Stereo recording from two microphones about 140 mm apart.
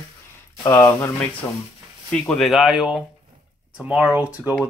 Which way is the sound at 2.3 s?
Centre (ahead or behind).